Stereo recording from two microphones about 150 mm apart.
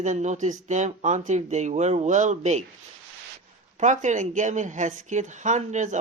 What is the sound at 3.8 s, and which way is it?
Speech, 55° right (ahead or behind).